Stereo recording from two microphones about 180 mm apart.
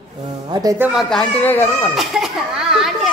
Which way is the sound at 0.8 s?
Centre (ahead or behind).